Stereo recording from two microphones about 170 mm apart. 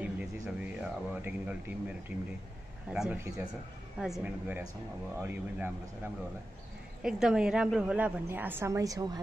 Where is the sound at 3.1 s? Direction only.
15° right (ahead or behind).